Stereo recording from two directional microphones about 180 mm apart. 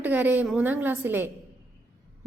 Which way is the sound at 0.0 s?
10° right (ahead or behind).